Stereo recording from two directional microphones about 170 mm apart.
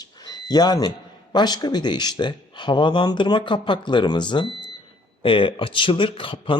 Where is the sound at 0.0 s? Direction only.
25° left (ahead or behind).